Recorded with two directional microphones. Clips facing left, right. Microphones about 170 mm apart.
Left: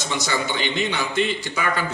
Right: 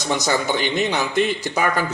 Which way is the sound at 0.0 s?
40° right (ahead or behind).